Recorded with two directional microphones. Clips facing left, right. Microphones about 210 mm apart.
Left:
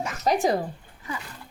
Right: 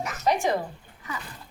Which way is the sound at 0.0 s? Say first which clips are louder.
Left 2 dB; 35° left (ahead or behind).